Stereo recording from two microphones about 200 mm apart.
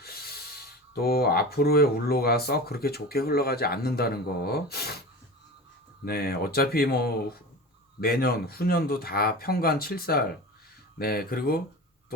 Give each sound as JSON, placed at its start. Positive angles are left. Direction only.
{"t": 0.0, "sound": "speech", "side_deg": 50}
{"t": 6.1, "sound": "speech", "side_deg": 50}